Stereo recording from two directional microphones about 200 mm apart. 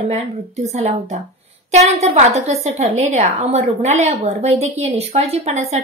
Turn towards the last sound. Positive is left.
turn(degrees=-35)  # may be behind; listen again after turning